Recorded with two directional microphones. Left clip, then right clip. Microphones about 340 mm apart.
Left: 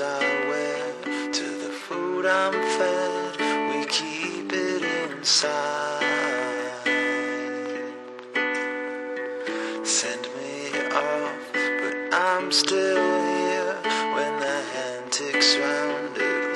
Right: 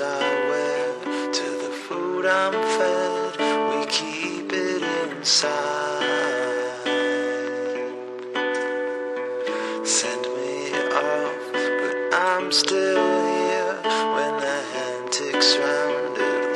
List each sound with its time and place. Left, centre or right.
0.2 s music: centre
2.2 s music: centre
10.8 s music: centre